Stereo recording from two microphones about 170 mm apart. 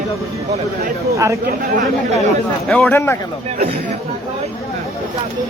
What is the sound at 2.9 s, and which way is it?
Speech, 15° left (ahead or behind).